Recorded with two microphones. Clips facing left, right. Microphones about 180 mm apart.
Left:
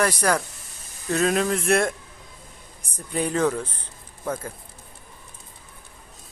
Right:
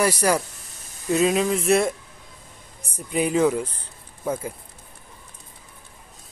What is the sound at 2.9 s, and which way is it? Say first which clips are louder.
Speech: right 3 dB; 10° right (ahead or behind).